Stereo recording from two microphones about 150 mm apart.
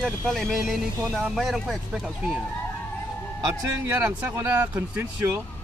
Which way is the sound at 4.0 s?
10° right (ahead or behind).